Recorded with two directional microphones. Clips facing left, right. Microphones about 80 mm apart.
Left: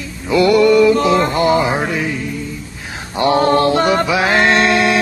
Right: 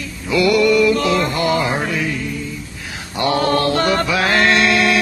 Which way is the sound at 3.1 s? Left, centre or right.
Left.